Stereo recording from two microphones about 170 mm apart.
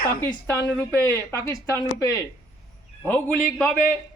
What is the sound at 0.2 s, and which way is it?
A woman's voice, 20° left (ahead or behind).